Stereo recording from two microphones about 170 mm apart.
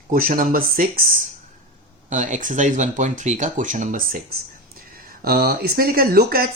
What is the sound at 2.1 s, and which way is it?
Speech, 45° right (ahead or behind).